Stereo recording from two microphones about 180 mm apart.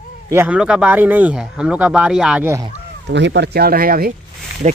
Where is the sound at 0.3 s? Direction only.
10° right (ahead or behind).